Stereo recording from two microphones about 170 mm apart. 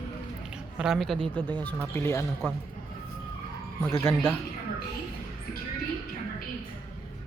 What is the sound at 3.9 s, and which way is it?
Speech, 15° left (ahead or behind).